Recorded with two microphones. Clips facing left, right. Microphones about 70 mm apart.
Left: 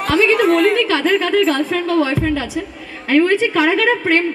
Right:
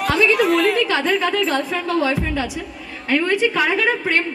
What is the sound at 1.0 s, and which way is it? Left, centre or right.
A woman's voice, centre.